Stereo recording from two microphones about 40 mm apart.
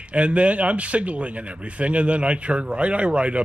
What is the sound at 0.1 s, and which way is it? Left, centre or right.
Speech, right.